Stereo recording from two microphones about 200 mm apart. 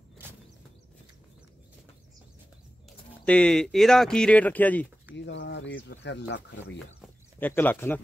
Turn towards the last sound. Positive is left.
turn(degrees=10)  # may be behind; listen again after turning